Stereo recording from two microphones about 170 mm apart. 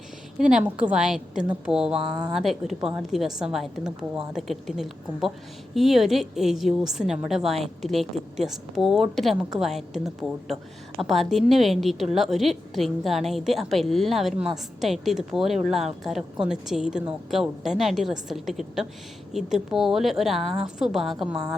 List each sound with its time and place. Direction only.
0.3 s a woman's voice: 5° right (ahead or behind)